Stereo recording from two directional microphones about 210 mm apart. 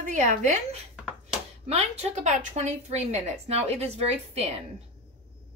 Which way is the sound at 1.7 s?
30° right (ahead or behind).